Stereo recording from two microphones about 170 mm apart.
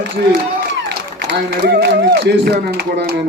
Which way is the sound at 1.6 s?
75° right (ahead or behind).